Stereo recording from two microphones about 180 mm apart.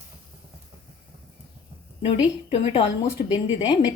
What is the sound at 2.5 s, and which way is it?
Speech, 35° left (ahead or behind).